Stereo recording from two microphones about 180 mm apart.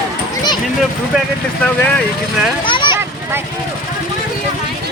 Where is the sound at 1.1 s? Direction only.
Centre (ahead or behind).